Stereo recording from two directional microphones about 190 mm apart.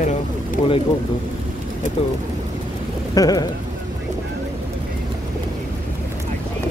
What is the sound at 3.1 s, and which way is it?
Speech, 20° left (ahead or behind).